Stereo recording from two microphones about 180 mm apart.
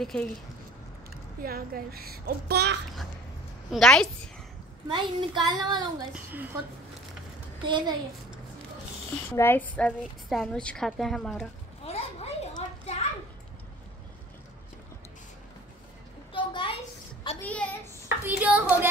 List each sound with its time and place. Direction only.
0.0 s a woman's voice: 5° left (ahead or behind)
1.1 s a child's voice: 55° right (ahead or behind)
3.7 s a woman's voice: 5° left (ahead or behind)
4.9 s speech: 25° right (ahead or behind)
6.1 s a woman's voice: 10° right (ahead or behind)
7.6 s speech: 25° right (ahead or behind)
9.3 s a woman's voice: 15° left (ahead or behind)
11.8 s a sound: 35° left (ahead or behind)
16.3 s a sound: 30° left (ahead or behind)
17.4 s a sound: 10° left (ahead or behind)
18.0 s speech: 10° right (ahead or behind)